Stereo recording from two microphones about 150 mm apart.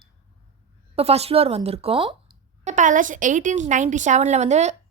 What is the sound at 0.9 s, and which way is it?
A woman's voice, 45° right (ahead or behind).